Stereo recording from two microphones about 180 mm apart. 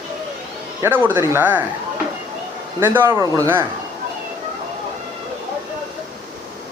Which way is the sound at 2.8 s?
10° right (ahead or behind).